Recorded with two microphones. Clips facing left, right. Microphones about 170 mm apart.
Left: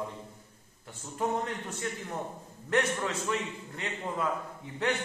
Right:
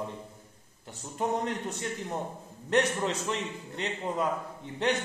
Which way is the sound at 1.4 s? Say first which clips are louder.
Right 2 dB; 20° right (ahead or behind).